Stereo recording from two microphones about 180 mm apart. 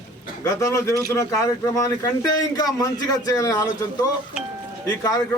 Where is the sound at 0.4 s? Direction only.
15° left (ahead or behind).